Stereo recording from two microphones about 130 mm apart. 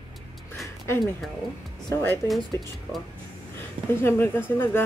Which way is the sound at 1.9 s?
20° left (ahead or behind).